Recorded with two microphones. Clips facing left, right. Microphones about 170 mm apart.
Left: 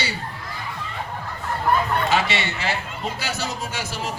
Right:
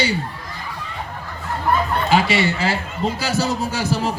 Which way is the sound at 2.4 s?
30° right (ahead or behind).